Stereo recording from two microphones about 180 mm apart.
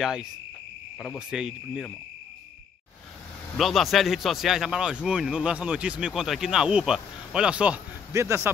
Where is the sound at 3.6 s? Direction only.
Centre (ahead or behind).